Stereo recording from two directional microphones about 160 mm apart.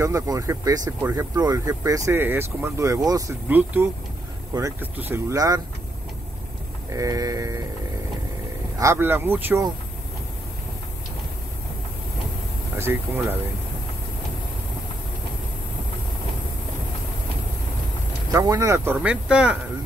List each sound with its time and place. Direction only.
0.0 s speech: 20° right (ahead or behind)
3.4 s speech: 10° right (ahead or behind)
6.9 s speech: 20° right (ahead or behind)
8.7 s speech: 15° right (ahead or behind)
12.7 s speech: 15° right (ahead or behind)
18.3 s speech: 25° right (ahead or behind)
19.0 s speech: 5° right (ahead or behind)